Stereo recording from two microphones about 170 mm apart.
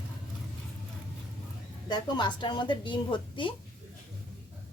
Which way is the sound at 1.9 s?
25° left (ahead or behind).